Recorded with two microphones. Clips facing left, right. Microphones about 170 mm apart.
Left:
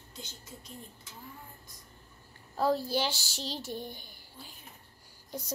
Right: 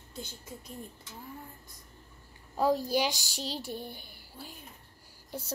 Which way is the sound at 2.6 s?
15° right (ahead or behind).